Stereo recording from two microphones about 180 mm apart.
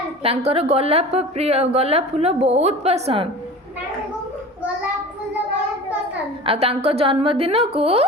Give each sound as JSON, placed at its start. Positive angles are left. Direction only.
{"t": 0.2, "sound": "a woman's voice", "side_deg": -35}
{"t": 6.4, "sound": "a woman's voice", "side_deg": -30}